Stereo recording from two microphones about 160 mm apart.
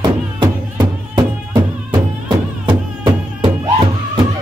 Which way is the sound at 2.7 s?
30° right (ahead or behind).